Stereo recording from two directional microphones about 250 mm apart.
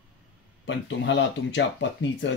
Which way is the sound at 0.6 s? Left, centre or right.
Left.